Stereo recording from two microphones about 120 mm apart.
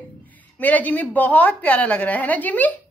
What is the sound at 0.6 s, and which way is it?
A woman's voice, 15° left (ahead or behind).